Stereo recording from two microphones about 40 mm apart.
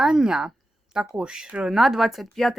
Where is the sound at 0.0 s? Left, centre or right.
Centre.